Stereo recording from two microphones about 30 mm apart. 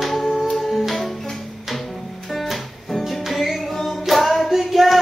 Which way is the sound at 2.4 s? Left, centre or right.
Centre.